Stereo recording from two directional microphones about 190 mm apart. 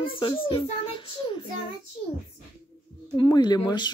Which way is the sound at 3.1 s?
20° left (ahead or behind).